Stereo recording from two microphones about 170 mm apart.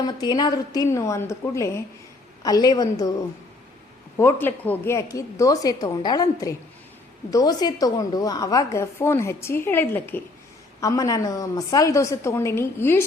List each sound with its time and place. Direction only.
0.0 s a woman's voice: 25° left (ahead or behind)
4.2 s a woman's voice: 15° left (ahead or behind)